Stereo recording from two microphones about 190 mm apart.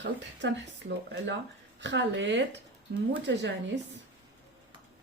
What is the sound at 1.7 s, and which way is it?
Speech, 70° right (ahead or behind).